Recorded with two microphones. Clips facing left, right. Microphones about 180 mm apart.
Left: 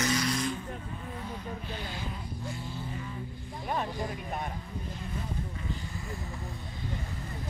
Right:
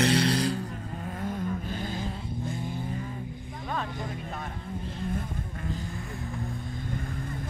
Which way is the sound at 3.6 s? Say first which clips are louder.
Left 1 dB; 20° left (ahead or behind).